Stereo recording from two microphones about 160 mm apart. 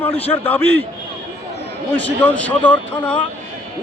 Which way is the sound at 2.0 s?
10° left (ahead or behind).